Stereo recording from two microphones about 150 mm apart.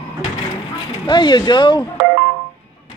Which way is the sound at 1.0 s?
30° left (ahead or behind).